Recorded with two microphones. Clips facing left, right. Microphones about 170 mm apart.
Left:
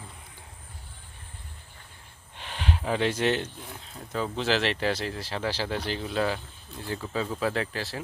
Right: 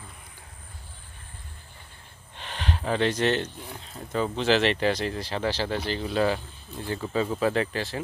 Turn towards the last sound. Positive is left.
turn(degrees=0)  # may be behind; listen again after turning